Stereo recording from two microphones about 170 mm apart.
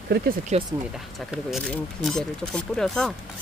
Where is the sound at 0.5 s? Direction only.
40° right (ahead or behind).